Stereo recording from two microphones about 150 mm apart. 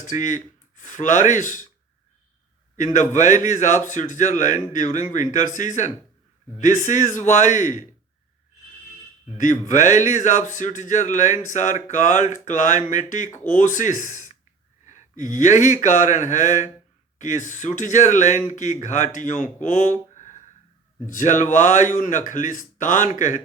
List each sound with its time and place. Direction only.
0.0 s speech: 60° left (ahead or behind)
2.7 s speech: 55° left (ahead or behind)
9.4 s speech: 60° left (ahead or behind)